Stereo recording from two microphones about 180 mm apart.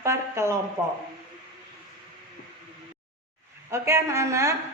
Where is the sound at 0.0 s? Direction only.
15° right (ahead or behind).